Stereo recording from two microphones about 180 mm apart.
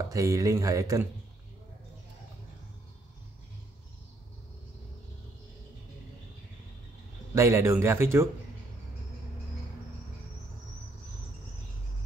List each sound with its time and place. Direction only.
0.1 s speech: 20° right (ahead or behind)
7.3 s speech: 15° right (ahead or behind)